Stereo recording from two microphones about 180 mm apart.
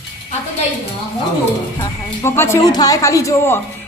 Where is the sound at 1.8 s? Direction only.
15° left (ahead or behind).